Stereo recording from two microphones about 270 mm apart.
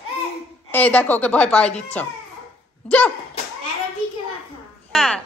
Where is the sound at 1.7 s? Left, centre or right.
Left.